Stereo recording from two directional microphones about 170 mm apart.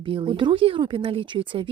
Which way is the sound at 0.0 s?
30° right (ahead or behind).